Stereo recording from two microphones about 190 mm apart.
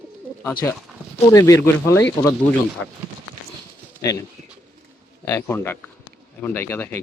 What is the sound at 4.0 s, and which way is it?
Speech, 15° left (ahead or behind).